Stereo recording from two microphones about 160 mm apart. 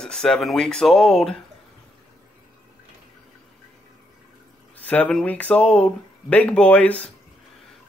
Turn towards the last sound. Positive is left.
turn(degrees=10)  # may be behind; listen again after turning